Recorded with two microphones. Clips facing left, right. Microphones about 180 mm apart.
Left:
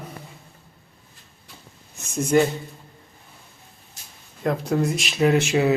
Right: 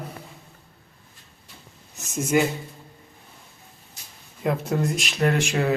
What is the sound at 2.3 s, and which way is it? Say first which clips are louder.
Speech: left 3 dB; 10° right (ahead or behind).